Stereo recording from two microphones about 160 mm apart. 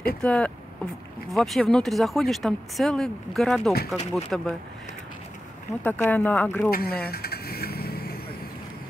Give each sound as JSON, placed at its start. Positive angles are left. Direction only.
{"t": 0.2, "sound": "speech", "side_deg": 5}
{"t": 5.9, "sound": "speech", "side_deg": 10}
{"t": 6.7, "sound": "vehicle", "side_deg": 70}